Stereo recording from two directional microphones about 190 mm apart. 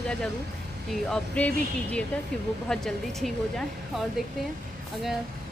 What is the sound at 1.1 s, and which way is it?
Speech, 5° left (ahead or behind).